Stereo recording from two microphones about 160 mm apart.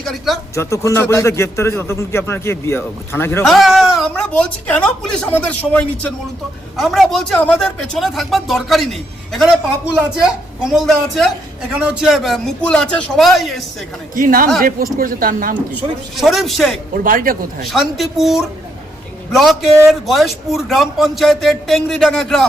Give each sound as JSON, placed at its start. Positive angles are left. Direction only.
{"t": 0.0, "sound": "speech", "side_deg": 0}
{"t": 0.5, "sound": "a man's voice", "side_deg": 15}
{"t": 3.4, "sound": "a man's voice", "side_deg": 0}
{"t": 4.3, "sound": "a man's voice", "side_deg": 10}
{"t": 14.2, "sound": "speech", "side_deg": -60}
{"t": 15.7, "sound": "a man's voice", "side_deg": 0}
{"t": 16.9, "sound": "speech", "side_deg": -60}
{"t": 17.7, "sound": "a man's voice", "side_deg": 0}